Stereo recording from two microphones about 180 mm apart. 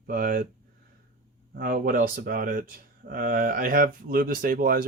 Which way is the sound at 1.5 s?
50° right (ahead or behind).